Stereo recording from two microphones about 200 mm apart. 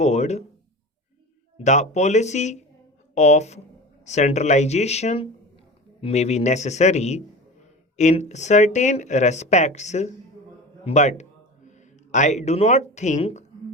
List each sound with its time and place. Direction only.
0.0 s speech: 35° left (ahead or behind)
1.5 s speech: 35° left (ahead or behind)